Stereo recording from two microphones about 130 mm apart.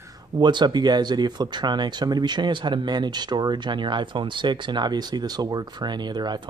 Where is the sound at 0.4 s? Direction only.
35° right (ahead or behind).